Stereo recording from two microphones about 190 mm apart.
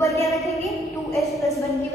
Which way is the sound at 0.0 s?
15° left (ahead or behind).